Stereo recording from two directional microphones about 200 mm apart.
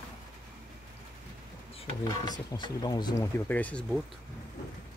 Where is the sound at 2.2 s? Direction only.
20° left (ahead or behind); by 4.0 s centre (ahead or behind).